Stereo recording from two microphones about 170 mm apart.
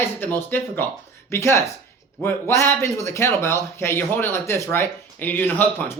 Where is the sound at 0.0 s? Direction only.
10° left (ahead or behind).